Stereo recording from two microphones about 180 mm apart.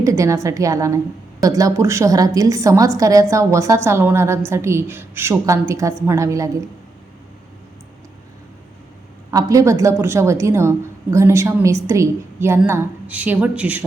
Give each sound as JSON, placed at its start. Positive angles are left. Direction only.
{"t": 0.0, "sound": "a woman's voice", "side_deg": -15}
{"t": 9.3, "sound": "a woman's voice", "side_deg": -20}